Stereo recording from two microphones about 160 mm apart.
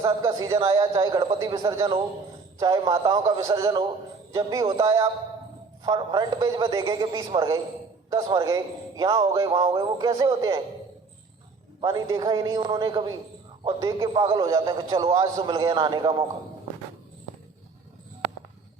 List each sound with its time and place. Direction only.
0.0 s a man's voice: 25° right (ahead or behind)
11.8 s a man's voice: 25° right (ahead or behind)